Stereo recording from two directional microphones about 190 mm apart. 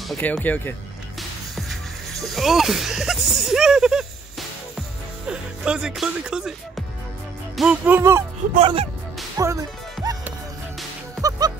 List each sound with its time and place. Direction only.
0.1 s speech: 10° left (ahead or behind)
7.5 s speech: 5° right (ahead or behind)
8.5 s speech: 30° right (ahead or behind)
9.4 s music: 15° right (ahead or behind)
11.1 s music: 20° right (ahead or behind)